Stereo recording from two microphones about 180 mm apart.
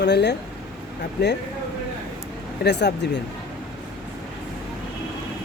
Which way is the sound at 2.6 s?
70° left (ahead or behind).